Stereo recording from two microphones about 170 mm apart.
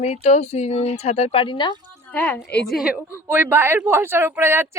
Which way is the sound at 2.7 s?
5° right (ahead or behind).